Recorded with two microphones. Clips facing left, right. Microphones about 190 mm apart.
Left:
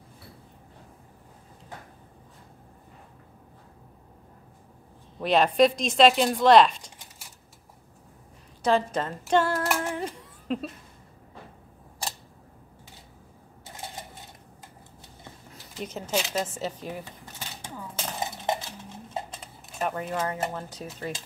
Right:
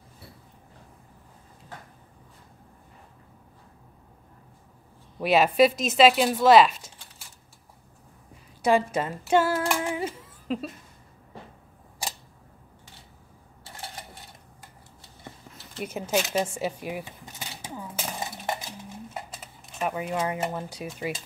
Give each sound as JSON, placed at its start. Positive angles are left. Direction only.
{"t": 5.2, "sound": "speech", "side_deg": -5}
{"t": 8.6, "sound": "female singing", "side_deg": -10}
{"t": 15.8, "sound": "speech", "side_deg": -10}
{"t": 16.4, "sound": "a sound", "side_deg": -10}
{"t": 18.2, "sound": "dishes", "side_deg": 20}
{"t": 19.3, "sound": "speech", "side_deg": -5}